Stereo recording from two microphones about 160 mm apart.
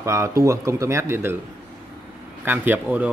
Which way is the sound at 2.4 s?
10° right (ahead or behind).